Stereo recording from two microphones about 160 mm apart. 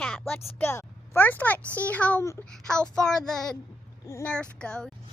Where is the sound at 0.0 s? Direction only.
5° left (ahead or behind).